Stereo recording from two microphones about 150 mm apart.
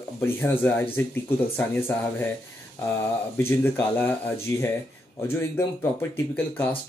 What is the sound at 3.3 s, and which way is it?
Speech, 15° left (ahead or behind).